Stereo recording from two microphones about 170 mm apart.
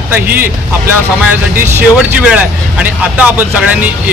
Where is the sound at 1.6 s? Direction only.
10° right (ahead or behind).